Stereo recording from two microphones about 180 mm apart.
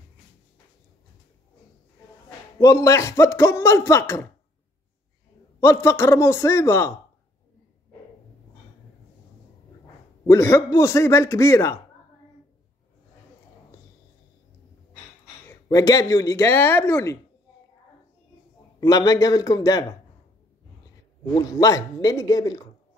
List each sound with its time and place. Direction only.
2.6 s speech: 15° left (ahead or behind)
5.6 s speech: 15° left (ahead or behind)
10.2 s speech: 15° left (ahead or behind)
15.5 s speech: 20° left (ahead or behind)
18.8 s speech: 20° left (ahead or behind)
21.4 s speech: 20° left (ahead or behind)